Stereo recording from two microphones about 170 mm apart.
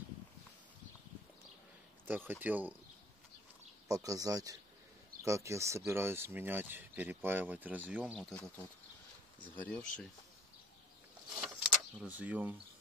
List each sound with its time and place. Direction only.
2.0 s speech: 10° right (ahead or behind)
3.9 s speech: 20° right (ahead or behind)
8.2 s speech: 10° left (ahead or behind)
11.4 s a sound: 5° right (ahead or behind)